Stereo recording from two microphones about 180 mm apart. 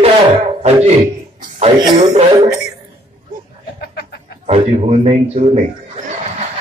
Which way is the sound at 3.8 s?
60° left (ahead or behind).